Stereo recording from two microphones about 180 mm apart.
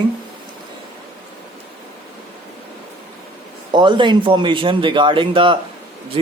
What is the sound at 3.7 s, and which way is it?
Speech, 25° right (ahead or behind).